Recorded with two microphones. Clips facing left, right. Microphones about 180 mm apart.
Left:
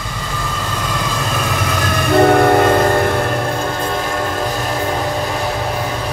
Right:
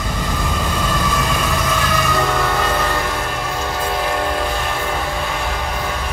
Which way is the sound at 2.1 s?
55° left (ahead or behind).